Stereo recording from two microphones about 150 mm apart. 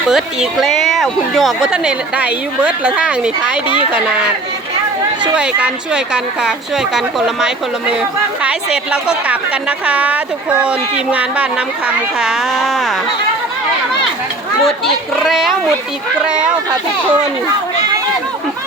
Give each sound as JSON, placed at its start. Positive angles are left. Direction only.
{"t": 0.5, "sound": "a woman's voice", "side_deg": 0}
{"t": 5.4, "sound": "a woman's voice", "side_deg": -5}
{"t": 8.4, "sound": "a woman's voice", "side_deg": -5}
{"t": 14.6, "sound": "a woman's voice", "side_deg": 0}